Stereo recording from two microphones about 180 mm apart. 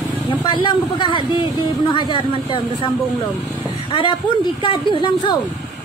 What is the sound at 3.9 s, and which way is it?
Speech, 30° left (ahead or behind).